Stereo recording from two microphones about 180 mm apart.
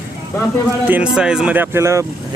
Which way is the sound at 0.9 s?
5° right (ahead or behind).